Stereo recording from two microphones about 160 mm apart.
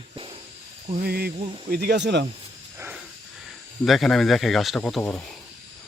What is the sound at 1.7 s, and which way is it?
Speech, 80° right.